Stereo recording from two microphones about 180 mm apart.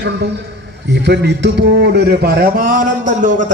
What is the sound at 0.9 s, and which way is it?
A man's voice, 70° right (ahead or behind).